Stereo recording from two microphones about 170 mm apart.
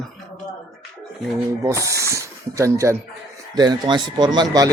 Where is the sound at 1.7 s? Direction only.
20° right (ahead or behind).